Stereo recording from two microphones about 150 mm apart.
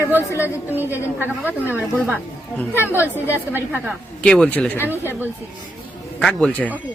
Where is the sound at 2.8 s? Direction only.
15° right (ahead or behind).